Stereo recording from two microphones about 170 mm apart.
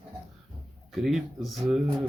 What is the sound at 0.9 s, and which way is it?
Speech, centre (ahead or behind).